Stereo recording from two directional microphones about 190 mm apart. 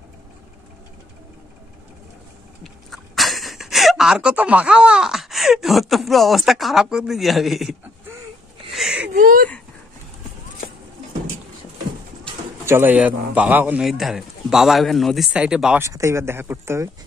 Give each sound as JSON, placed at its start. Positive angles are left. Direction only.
{"t": 2.6, "sound": "speech", "side_deg": 0}
{"t": 8.7, "sound": "whimper", "side_deg": -5}
{"t": 9.1, "sound": "a sound", "side_deg": -50}
{"t": 12.6, "sound": "a man's voice", "side_deg": -10}
{"t": 15.8, "sound": "speech", "side_deg": -15}